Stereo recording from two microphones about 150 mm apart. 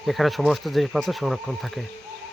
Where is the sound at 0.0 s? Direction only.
Centre (ahead or behind).